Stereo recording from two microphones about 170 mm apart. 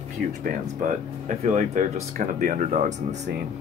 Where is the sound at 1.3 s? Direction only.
45° right (ahead or behind).